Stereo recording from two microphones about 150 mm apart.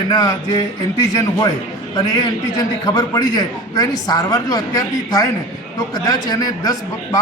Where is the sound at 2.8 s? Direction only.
25° left (ahead or behind).